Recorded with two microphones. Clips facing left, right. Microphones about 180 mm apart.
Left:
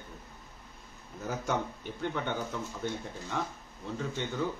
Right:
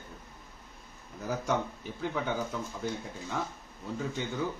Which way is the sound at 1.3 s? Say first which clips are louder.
Right 2 dB; centre (ahead or behind).